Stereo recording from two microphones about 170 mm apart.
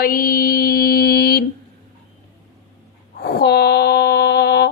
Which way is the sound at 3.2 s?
65° left (ahead or behind).